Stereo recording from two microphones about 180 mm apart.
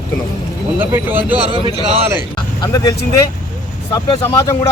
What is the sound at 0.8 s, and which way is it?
Speech, 10° right (ahead or behind).